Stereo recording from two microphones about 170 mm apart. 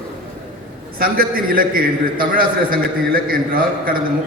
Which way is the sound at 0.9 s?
60° right (ahead or behind).